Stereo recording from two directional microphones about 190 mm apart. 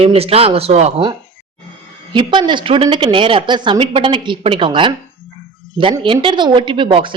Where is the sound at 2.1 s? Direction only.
25° right (ahead or behind).